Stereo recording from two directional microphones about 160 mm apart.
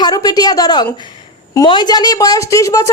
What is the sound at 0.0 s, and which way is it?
A woman's voice, 25° left (ahead or behind).